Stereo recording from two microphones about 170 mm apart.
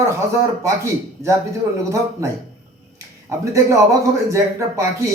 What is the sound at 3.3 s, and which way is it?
Speech, 20° right (ahead or behind).